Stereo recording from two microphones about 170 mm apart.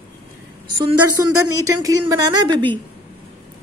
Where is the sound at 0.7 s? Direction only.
25° right (ahead or behind).